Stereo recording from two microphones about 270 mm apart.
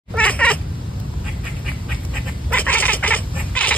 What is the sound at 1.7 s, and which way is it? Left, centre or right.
Bird, centre.